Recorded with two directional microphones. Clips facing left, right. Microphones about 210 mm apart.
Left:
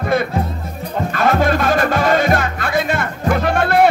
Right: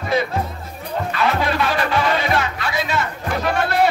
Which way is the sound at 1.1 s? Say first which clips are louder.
Left 5 dB; 45° left (ahead or behind).